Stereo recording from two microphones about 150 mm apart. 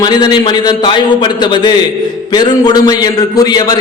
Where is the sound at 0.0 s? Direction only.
30° left (ahead or behind).